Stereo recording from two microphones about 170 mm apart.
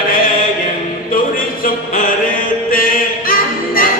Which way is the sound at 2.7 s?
55° left (ahead or behind).